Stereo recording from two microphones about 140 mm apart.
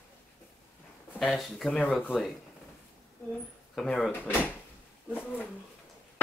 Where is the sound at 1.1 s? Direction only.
Centre (ahead or behind).